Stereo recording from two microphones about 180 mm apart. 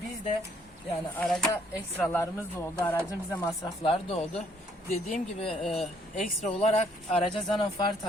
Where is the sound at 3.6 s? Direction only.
30° left (ahead or behind).